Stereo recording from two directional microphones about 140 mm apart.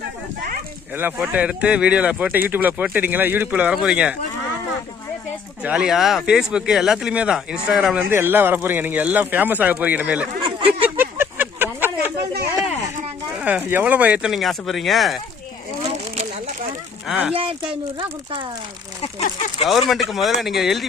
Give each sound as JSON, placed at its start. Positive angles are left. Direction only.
{"t": 0.9, "sound": "speech", "side_deg": -15}
{"t": 5.6, "sound": "speech", "side_deg": -5}
{"t": 8.1, "sound": "speech", "side_deg": -15}
{"t": 10.7, "sound": "a sound", "side_deg": -10}
{"t": 13.3, "sound": "speech", "side_deg": -10}
{"t": 17.1, "sound": "speech", "side_deg": -5}
{"t": 17.3, "sound": "speech", "side_deg": -40}
{"t": 19.0, "sound": "speech", "side_deg": 45}
{"t": 19.9, "sound": "speech", "side_deg": 0}